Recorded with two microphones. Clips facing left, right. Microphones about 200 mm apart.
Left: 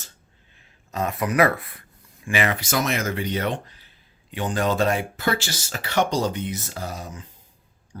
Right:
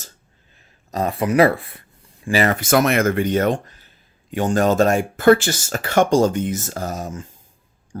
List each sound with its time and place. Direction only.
0.9 s speech: 35° right (ahead or behind)